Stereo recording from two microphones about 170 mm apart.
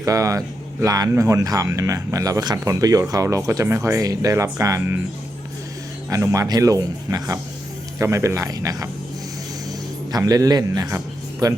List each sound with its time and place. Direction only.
0.0 s speech: 20° right (ahead or behind)
6.1 s speech: 20° right (ahead or behind)
10.1 s a man's voice: 20° right (ahead or behind)